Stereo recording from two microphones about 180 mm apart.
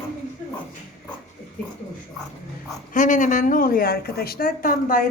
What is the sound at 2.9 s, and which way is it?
Speech, 45° left (ahead or behind).